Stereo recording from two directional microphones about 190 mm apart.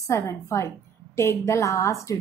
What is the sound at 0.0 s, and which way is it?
A woman's voice, 15° left (ahead or behind).